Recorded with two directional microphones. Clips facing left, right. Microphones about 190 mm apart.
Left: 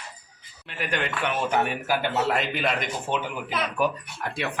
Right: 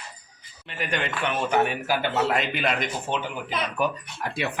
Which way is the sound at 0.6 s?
Centre (ahead or behind).